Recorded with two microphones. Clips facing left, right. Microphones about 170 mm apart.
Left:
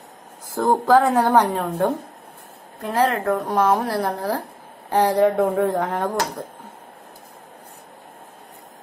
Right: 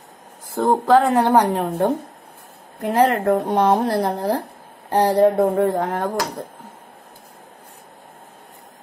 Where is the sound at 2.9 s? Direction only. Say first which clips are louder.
Right 3 dB; 25° right (ahead or behind); by 6.1 s 5° right (ahead or behind).